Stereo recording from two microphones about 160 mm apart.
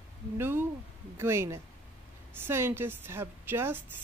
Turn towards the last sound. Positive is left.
turn(degrees=-15)  # may be behind; listen again after turning